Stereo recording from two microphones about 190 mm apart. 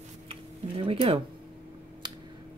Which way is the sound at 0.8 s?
30° right (ahead or behind).